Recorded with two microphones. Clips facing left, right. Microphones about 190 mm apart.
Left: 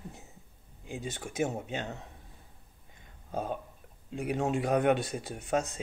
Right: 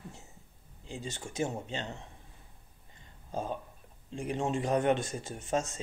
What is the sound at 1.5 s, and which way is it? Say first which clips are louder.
Speech: left 2 dB; 15° left (ahead or behind).